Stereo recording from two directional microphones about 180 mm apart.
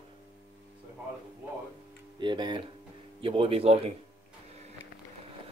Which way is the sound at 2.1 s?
25° right (ahead or behind).